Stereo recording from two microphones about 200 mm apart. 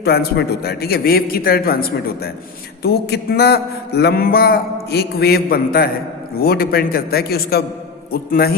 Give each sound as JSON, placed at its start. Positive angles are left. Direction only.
{"t": 0.0, "sound": "mantra", "side_deg": 55}